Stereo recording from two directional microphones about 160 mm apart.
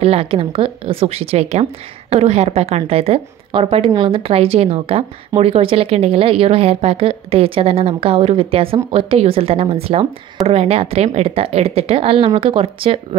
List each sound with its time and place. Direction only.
0.0 s a woman's voice: 35° right (ahead or behind)